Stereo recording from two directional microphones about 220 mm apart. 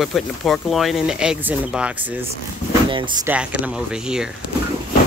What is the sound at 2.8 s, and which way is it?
Speech, 20° right (ahead or behind).